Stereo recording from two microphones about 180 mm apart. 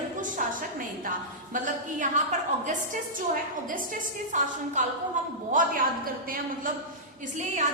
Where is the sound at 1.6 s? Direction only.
45° right (ahead or behind).